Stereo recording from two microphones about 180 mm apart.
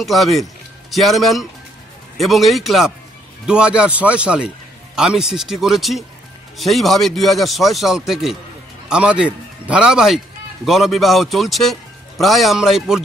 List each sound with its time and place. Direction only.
0.0 s a man's voice: centre (ahead or behind)